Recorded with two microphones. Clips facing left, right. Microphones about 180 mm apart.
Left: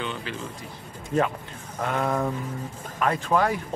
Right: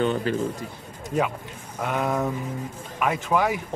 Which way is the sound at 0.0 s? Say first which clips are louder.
Right 9 dB; 45° right (ahead or behind).